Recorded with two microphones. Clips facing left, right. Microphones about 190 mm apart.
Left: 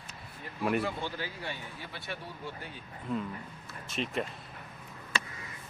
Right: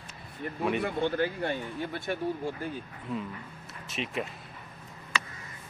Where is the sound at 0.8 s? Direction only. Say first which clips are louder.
Right 8 dB; 55° right (ahead or behind).